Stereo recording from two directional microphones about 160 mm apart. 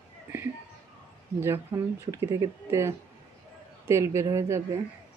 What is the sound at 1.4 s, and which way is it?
Speech, 15° right (ahead or behind).